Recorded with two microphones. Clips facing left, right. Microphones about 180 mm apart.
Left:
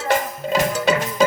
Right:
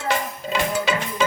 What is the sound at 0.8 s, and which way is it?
Music, 40° left (ahead or behind).